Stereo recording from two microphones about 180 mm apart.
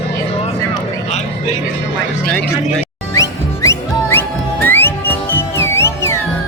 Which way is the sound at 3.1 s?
15° left (ahead or behind).